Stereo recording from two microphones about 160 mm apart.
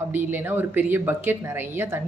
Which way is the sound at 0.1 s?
10° right (ahead or behind).